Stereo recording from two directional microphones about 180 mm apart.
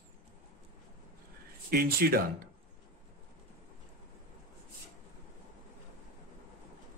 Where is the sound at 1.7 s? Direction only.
55° right (ahead or behind).